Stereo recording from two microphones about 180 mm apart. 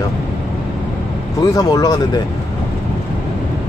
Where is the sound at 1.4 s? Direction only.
20° left (ahead or behind).